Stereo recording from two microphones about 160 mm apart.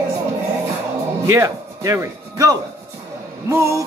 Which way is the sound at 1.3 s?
20° right (ahead or behind).